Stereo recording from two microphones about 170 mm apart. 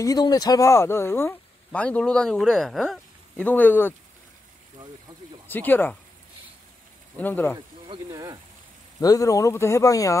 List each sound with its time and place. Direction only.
0.0 s speech: 20° left (ahead or behind)
5.5 s speech: 10° left (ahead or behind)
7.2 s speech: 10° left (ahead or behind)
8.1 s speech: 20° right (ahead or behind)
9.0 s speech: 20° left (ahead or behind)